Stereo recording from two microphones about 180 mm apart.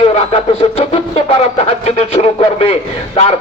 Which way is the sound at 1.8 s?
35° left (ahead or behind).